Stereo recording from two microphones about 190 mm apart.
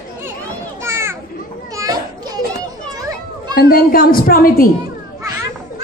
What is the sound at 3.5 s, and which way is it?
A woman's voice, 50° left (ahead or behind).